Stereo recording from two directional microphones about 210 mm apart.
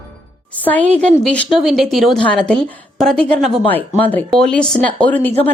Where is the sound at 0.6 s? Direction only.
5° left (ahead or behind).